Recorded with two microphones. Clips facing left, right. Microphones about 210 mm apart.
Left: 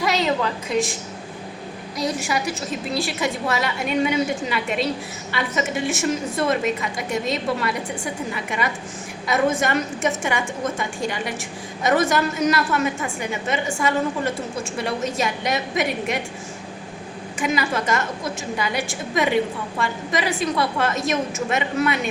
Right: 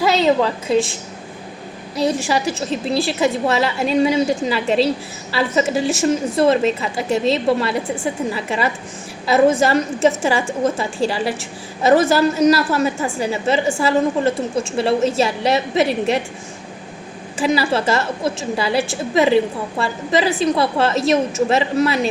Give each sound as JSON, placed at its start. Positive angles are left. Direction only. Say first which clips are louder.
{"t": 0.0, "sound": "a woman's voice", "louder": "right 6 dB", "side_deg": -30}
{"t": 2.0, "sound": "a woman's voice", "louder": "right 6 dB", "side_deg": -30}
{"t": 17.4, "sound": "a woman's voice", "louder": "right 5 dB", "side_deg": -30}